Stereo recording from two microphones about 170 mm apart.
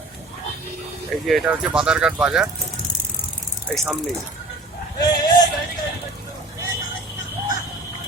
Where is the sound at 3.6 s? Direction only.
Centre (ahead or behind).